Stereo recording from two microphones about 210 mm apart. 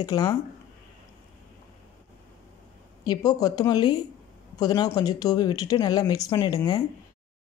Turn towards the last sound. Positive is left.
turn(degrees=15)  # may be behind; listen again after turning